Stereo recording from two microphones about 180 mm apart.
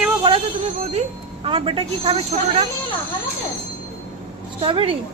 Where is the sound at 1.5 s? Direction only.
30° right (ahead or behind).